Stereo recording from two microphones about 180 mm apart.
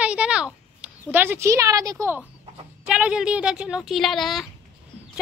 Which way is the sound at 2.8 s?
5° right (ahead or behind).